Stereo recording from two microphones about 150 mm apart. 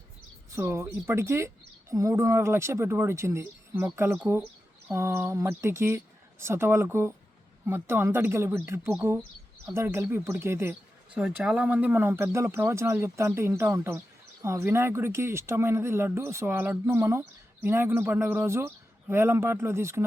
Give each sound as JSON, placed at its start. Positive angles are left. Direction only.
{"t": 0.5, "sound": "speech", "side_deg": -15}